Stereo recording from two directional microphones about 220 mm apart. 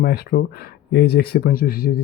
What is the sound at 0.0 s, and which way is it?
Speech, 45° left (ahead or behind).